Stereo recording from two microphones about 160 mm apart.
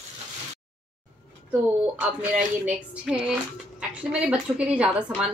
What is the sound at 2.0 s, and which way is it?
Speech, 10° right (ahead or behind).